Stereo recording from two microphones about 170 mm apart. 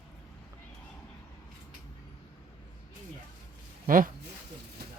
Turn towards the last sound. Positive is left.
turn(degrees=-55)  # may be behind; listen again after turning